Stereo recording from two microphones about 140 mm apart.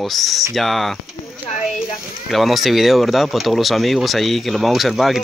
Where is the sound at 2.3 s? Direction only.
Centre (ahead or behind).